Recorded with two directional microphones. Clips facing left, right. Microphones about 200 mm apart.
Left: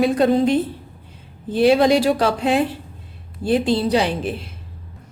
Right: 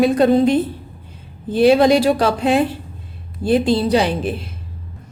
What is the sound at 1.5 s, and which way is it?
A woman's voice, 45° right (ahead or behind).